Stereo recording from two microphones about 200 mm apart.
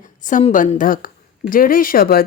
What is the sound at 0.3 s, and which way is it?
Speech, 40° left (ahead or behind).